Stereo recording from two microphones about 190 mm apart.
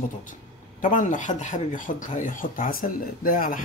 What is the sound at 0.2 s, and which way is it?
Speech, 45° left (ahead or behind).